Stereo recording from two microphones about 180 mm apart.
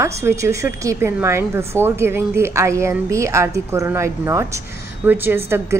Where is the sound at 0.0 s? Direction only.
15° right (ahead or behind).